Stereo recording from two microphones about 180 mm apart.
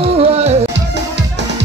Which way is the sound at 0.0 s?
35° right (ahead or behind).